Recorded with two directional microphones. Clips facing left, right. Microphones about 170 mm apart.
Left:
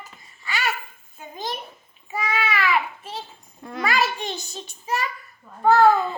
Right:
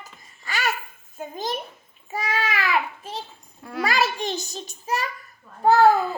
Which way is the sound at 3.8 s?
40° right (ahead or behind).